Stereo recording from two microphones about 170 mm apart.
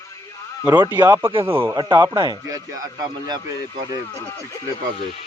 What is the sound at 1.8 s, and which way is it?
Speech, 25° right (ahead or behind).